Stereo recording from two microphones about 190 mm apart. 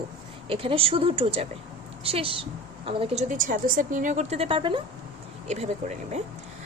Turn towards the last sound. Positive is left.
turn(degrees=-35)  # may be behind; listen again after turning